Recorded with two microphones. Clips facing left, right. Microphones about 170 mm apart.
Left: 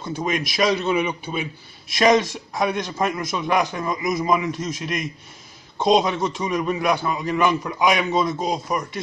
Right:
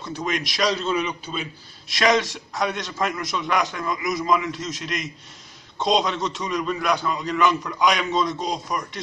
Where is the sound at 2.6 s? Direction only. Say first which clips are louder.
Left 3 dB; 10° left (ahead or behind).